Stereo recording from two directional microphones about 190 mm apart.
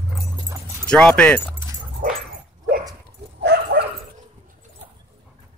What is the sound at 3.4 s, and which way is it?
Bow-wow, 55° right (ahead or behind).